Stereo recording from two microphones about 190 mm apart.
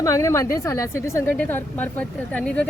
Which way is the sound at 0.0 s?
15° left (ahead or behind).